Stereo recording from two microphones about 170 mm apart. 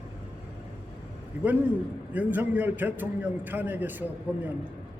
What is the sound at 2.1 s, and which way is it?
A man's voice, 10° right (ahead or behind).